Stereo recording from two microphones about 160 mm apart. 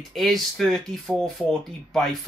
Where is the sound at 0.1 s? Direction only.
Centre (ahead or behind).